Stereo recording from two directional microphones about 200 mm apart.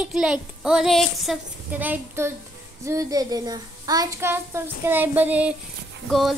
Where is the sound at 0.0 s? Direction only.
5° right (ahead or behind).